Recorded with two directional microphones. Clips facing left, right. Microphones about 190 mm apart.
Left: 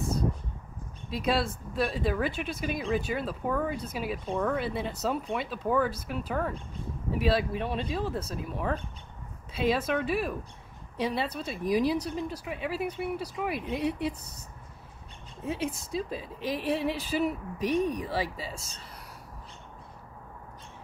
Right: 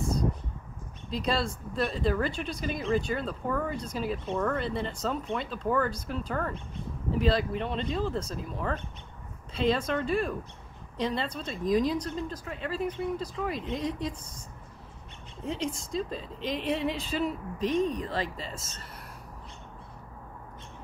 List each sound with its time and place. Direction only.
1.8 s speech: 5° left (ahead or behind)
15.4 s speech: 5° left (ahead or behind)